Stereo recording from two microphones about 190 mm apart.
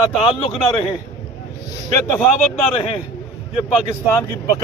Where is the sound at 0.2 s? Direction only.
30° left (ahead or behind).